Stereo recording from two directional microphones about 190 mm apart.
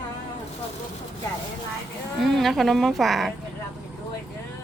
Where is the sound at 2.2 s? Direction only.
Centre (ahead or behind).